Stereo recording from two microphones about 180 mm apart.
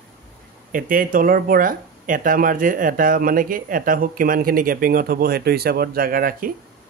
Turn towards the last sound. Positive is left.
turn(degrees=-55)  # may be behind; listen again after turning